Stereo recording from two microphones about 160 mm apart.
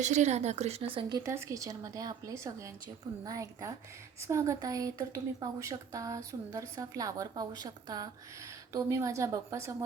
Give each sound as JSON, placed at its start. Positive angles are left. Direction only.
{"t": 0.0, "sound": "a woman's voice", "side_deg": -45}
{"t": 1.2, "sound": "a woman's voice", "side_deg": -20}